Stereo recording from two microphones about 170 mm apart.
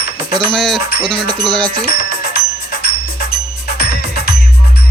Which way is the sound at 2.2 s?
65° left (ahead or behind).